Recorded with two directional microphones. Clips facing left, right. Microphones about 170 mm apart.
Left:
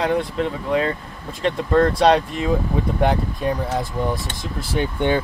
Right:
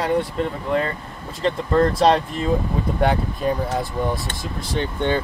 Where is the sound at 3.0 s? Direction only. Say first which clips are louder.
Right 1 dB; centre (ahead or behind).